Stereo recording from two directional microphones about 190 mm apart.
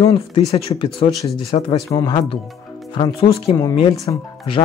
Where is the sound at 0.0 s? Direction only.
25° left (ahead or behind).